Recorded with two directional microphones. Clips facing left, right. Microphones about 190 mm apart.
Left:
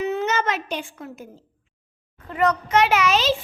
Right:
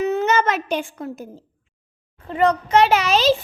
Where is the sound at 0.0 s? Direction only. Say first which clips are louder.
Right 4 dB; 45° right (ahead or behind).